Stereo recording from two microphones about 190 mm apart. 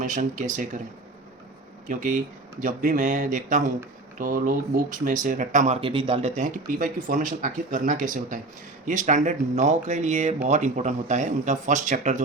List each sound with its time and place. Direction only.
0.0 s speech: 40° right (ahead or behind)
1.9 s speech: 40° right (ahead or behind)